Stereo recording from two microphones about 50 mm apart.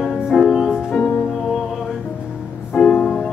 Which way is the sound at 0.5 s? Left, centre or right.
Centre.